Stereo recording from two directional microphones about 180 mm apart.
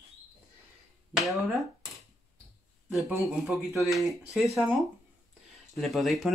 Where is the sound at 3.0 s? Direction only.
15° right (ahead or behind).